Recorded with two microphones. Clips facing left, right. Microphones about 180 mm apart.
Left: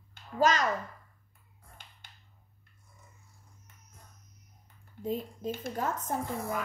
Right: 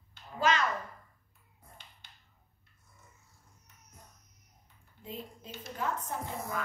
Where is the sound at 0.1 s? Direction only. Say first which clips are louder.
Left 3 dB; 40° left (ahead or behind).